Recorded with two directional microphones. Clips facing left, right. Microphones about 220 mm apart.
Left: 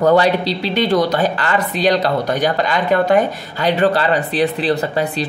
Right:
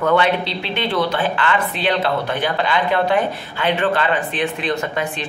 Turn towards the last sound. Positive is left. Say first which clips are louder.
# left 4 dB
turn(degrees=35)  # may be behind; listen again after turning